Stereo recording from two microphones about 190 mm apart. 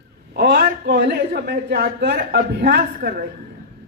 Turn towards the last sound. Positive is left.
turn(degrees=-50)  # may be behind; listen again after turning